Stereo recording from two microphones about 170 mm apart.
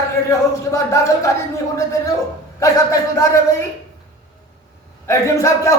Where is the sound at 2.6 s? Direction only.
20° left (ahead or behind).